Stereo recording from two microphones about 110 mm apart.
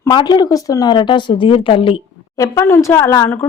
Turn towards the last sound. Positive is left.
turn(degrees=30)  # may be behind; listen again after turning